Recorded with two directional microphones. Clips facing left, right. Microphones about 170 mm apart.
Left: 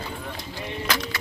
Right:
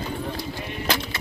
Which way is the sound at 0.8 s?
25° right (ahead or behind).